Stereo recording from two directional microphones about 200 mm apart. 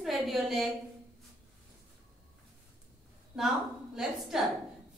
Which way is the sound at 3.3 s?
Centre (ahead or behind).